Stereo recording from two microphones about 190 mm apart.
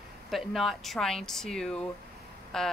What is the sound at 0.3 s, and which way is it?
Speech, centre (ahead or behind).